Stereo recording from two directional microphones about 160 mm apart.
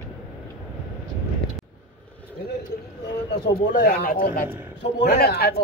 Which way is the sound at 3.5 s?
65° left (ahead or behind).